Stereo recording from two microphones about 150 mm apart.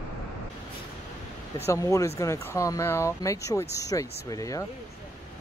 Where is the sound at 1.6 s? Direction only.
20° left (ahead or behind).